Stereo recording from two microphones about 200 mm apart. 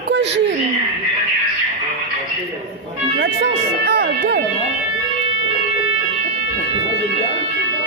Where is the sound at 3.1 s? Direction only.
60° right (ahead or behind).